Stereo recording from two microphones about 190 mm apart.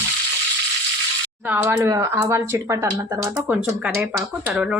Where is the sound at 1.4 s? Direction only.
10° right (ahead or behind).